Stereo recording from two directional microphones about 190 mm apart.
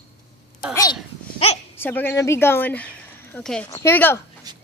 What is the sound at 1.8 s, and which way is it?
Speech, 10° left (ahead or behind).